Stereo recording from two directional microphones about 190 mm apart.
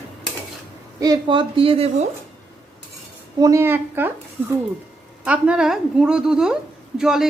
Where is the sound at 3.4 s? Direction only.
15° right (ahead or behind).